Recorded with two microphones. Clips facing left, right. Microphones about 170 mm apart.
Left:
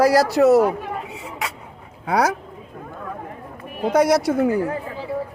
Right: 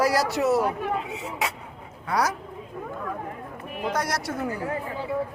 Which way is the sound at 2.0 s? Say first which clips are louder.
Left 6 dB; 60° left (ahead or behind).